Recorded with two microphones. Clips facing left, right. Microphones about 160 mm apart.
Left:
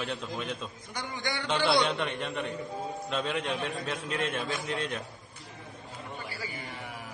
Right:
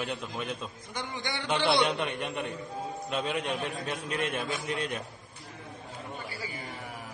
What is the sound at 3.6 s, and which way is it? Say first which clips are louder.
Speech: even; 15° right (ahead or behind).